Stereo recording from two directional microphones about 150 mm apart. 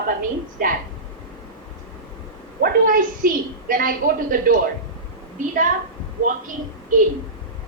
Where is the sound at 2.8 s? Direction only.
65° right (ahead or behind).